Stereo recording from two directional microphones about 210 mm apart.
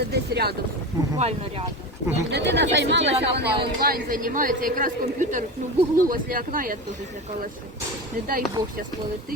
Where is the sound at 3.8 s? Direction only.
45° right (ahead or behind).